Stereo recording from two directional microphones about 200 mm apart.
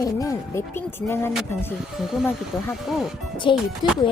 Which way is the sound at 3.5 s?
25° left (ahead or behind).